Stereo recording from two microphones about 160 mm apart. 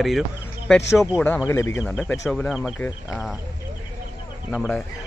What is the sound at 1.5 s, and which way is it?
Speech, 15° left (ahead or behind).